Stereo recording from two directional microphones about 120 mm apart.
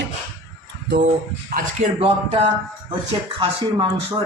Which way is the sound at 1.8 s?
90° right.